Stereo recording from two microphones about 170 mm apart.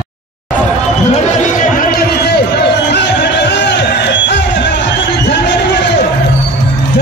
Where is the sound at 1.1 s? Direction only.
50° left (ahead or behind).